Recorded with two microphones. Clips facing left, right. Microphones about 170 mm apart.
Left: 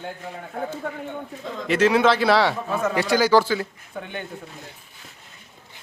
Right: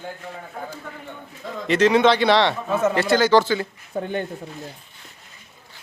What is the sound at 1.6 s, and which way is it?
A man's voice, 5° left (ahead or behind).